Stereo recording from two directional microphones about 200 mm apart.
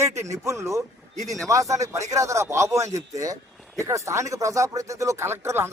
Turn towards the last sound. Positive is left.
turn(degrees=-10)  # may be behind; listen again after turning